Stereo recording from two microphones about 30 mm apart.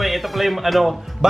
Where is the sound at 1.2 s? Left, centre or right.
Right.